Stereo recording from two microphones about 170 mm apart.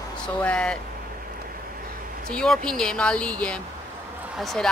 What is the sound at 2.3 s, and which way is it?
Speech, 5° left (ahead or behind).